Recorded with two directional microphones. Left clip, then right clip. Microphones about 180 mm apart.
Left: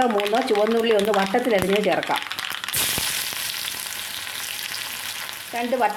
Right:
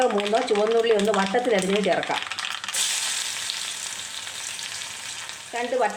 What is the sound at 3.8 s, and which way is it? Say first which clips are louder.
Frying: left 2 dB; 20° left (ahead or behind).